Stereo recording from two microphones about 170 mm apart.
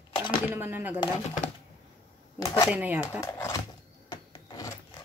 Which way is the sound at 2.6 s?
10° right (ahead or behind).